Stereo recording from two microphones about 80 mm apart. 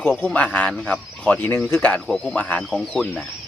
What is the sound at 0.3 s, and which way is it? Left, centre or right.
Speech, centre.